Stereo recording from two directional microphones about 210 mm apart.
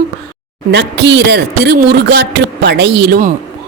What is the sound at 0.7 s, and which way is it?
Speech, 55° right (ahead or behind).